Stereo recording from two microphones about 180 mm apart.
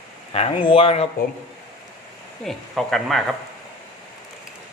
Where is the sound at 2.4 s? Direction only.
Centre (ahead or behind).